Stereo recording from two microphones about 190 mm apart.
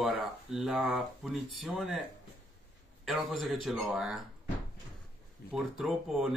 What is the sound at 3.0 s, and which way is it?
Speech, centre (ahead or behind).